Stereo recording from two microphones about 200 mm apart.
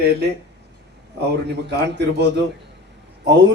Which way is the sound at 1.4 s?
60° right (ahead or behind).